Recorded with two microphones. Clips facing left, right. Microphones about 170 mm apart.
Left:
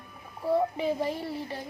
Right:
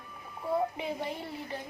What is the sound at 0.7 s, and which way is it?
Speech, 35° left (ahead or behind).